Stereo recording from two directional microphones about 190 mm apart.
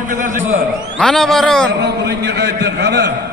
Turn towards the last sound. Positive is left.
turn(degrees=-65)  # may be behind; listen again after turning